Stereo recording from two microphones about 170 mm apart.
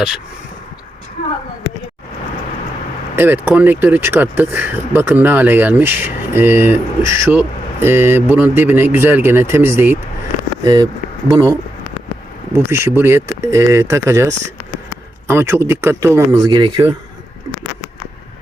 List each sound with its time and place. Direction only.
3.2 s speech: 10° right (ahead or behind)
12.5 s speech: 15° right (ahead or behind)